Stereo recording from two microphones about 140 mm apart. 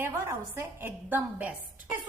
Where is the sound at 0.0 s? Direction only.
15° right (ahead or behind).